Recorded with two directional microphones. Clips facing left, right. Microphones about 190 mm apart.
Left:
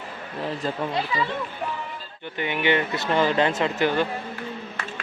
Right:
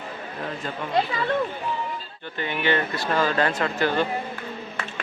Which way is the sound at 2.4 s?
15° left (ahead or behind).